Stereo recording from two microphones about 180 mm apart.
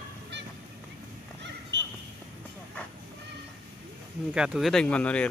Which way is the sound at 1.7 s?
85° right.